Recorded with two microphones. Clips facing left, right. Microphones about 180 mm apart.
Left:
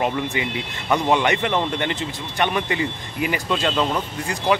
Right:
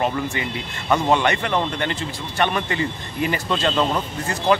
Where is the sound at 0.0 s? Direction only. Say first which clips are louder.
Even; 15° left (ahead or behind).